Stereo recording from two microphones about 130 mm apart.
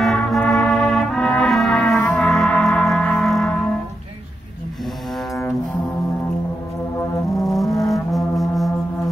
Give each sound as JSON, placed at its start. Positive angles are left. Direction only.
{"t": 0.0, "sound": "brass instrument", "side_deg": 0}
{"t": 1.9, "sound": "music", "side_deg": 15}
{"t": 2.1, "sound": "gong", "side_deg": 5}
{"t": 3.0, "sound": "a sound", "side_deg": 5}
{"t": 7.4, "sound": "music", "side_deg": 0}